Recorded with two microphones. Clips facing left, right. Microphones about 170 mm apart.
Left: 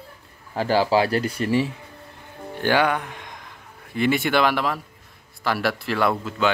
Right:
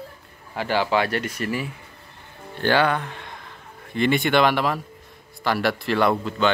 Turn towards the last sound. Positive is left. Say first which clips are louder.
# right 1 dB
turn(degrees=5)  # may be behind; listen again after turning